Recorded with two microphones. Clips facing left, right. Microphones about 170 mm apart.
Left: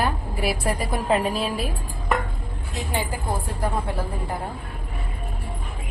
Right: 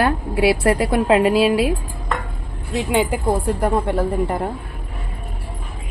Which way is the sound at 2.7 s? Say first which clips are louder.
Right 10 dB; 80° right.